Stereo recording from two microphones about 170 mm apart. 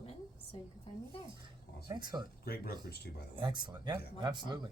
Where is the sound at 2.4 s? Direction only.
60° left (ahead or behind).